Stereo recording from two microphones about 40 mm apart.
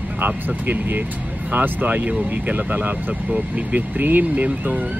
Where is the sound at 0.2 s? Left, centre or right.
Right.